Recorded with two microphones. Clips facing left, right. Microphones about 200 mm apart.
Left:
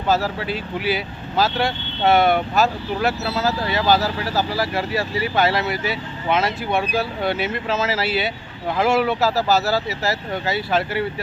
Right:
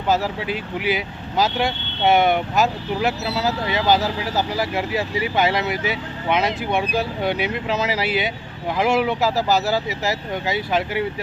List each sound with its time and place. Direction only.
0.1 s speech: 15° right (ahead or behind)